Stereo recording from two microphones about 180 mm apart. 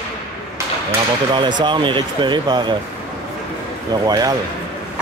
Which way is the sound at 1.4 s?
25° right (ahead or behind).